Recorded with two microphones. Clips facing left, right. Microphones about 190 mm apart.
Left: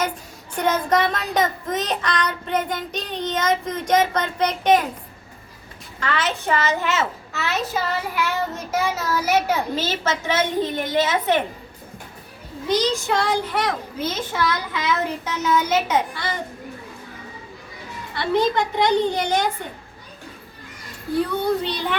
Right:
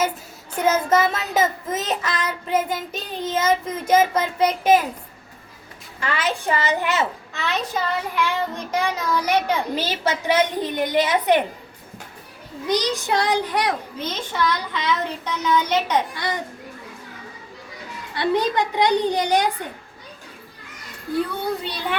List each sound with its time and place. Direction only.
0.6 s child singing: 5° right (ahead or behind)
6.0 s a woman's voice: 10° right (ahead or behind)
7.3 s child singing: 5° left (ahead or behind)
9.7 s a woman's voice: 15° right (ahead or behind)
12.6 s a woman's voice: 15° right (ahead or behind)
14.0 s a child's voice: 5° left (ahead or behind)
16.1 s a woman's voice: 15° right (ahead or behind)
18.2 s a woman's voice: 15° right (ahead or behind)